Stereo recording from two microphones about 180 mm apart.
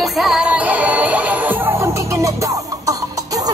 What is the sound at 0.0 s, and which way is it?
Music, centre (ahead or behind).